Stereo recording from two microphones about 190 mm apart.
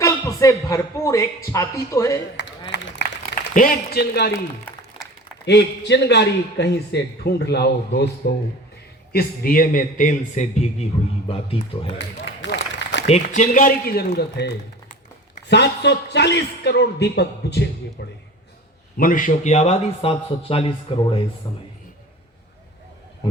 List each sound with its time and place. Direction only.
0.0 s a man's voice: 15° left (ahead or behind)
2.6 s a sound: 65° left (ahead or behind)
3.5 s a man's voice: 50° left (ahead or behind)
5.5 s a man's voice: 65° left (ahead or behind); by 11.9 s 30° left (ahead or behind)
11.9 s a sound: 70° left (ahead or behind)
13.3 s a man's voice: 40° left (ahead or behind); by 18.1 s 60° left (ahead or behind)
18.9 s speech: 45° left (ahead or behind); by 21.6 s 25° left (ahead or behind)